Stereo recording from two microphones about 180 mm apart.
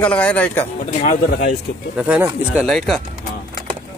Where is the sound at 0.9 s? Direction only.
45° left (ahead or behind).